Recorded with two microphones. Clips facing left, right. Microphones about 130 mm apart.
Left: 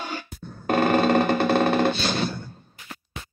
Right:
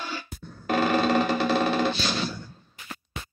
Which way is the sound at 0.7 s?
55° left (ahead or behind).